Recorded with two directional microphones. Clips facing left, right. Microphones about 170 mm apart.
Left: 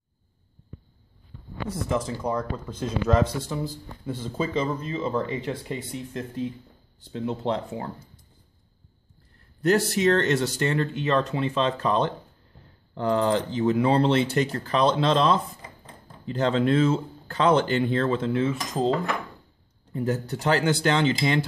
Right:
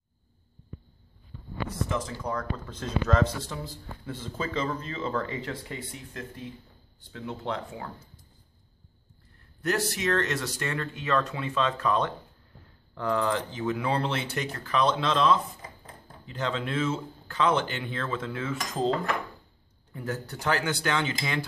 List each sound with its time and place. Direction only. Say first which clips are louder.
2.0 s speech: left 7 dB; 25° left (ahead or behind)
9.6 s speech: left 7 dB; 30° left (ahead or behind)
18.6 s speech: left 3 dB; centre (ahead or behind)
19.9 s speech: left 7 dB; 25° left (ahead or behind)